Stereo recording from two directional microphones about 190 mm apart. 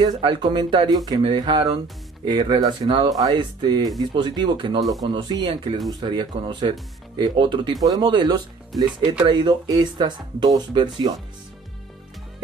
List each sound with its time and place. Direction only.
0.0 s speech: 25° right (ahead or behind)